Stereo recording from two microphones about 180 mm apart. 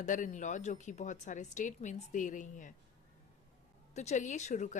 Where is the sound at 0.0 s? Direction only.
45° left (ahead or behind).